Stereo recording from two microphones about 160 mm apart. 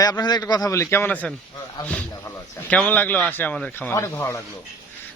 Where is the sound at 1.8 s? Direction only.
25° left (ahead or behind).